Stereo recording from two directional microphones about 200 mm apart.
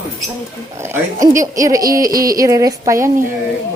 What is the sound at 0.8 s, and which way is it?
Speech, 15° right (ahead or behind).